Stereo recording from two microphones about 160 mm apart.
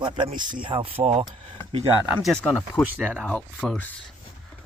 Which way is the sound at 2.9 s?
10° right (ahead or behind).